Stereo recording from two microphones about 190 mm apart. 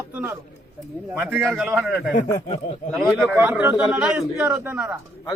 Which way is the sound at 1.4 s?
Centre (ahead or behind).